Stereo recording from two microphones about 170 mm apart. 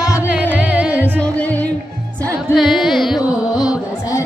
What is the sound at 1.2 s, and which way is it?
Music, 10° left (ahead or behind).